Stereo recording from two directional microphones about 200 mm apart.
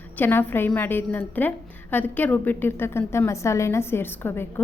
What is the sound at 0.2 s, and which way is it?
A woman's voice, 10° left (ahead or behind).